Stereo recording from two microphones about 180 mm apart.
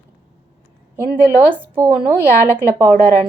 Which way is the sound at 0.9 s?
10° right (ahead or behind).